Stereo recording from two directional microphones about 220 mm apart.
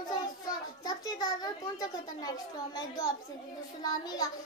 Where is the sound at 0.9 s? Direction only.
15° left (ahead or behind).